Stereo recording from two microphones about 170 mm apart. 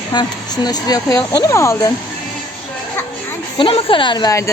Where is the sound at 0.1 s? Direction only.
25° left (ahead or behind).